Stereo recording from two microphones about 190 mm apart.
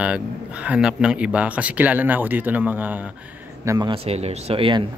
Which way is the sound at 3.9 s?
35° right (ahead or behind).